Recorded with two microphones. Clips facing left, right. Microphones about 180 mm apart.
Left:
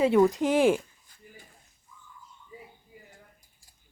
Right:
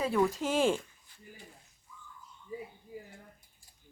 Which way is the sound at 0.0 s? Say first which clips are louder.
Left 8 dB; 20° left (ahead or behind).